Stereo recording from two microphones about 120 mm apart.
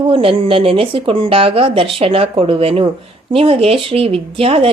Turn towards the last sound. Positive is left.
turn(degrees=-50)  # may be behind; listen again after turning